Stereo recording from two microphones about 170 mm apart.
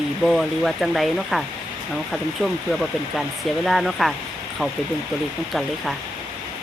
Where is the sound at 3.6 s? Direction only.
Centre (ahead or behind).